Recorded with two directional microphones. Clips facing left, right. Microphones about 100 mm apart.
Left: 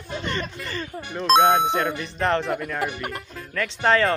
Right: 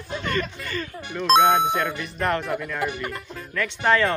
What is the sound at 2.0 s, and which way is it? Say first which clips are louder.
Speech: left 2 dB; 30° left (ahead or behind).